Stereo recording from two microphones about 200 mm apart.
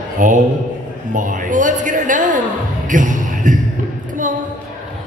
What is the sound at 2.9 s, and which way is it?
Music, 40° right (ahead or behind).